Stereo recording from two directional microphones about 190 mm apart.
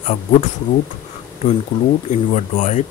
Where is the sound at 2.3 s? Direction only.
40° left (ahead or behind).